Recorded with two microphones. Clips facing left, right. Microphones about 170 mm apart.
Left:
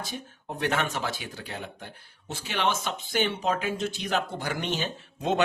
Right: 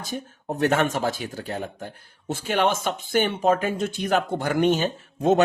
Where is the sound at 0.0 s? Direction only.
45° right (ahead or behind).